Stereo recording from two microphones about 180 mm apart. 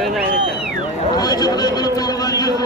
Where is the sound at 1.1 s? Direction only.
20° left (ahead or behind).